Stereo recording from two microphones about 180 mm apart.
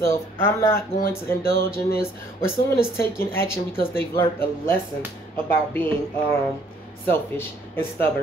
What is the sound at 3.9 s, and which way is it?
Speech, 15° left (ahead or behind).